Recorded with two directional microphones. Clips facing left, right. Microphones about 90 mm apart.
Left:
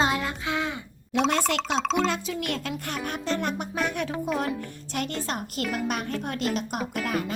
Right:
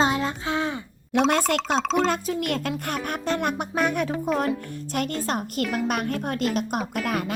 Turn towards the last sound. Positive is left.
turn(degrees=-55)  # may be behind; listen again after turning